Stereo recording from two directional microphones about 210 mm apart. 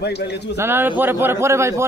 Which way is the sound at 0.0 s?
50° left (ahead or behind).